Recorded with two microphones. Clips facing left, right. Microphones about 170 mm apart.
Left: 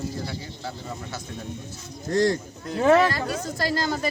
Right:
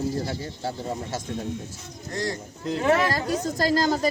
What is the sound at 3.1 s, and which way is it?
Speech, 40° right (ahead or behind).